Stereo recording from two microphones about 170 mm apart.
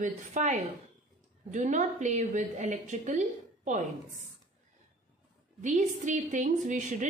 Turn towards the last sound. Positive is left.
turn(degrees=-45)  # may be behind; listen again after turning